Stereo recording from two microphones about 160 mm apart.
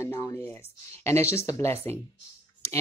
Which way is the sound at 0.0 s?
20° left (ahead or behind).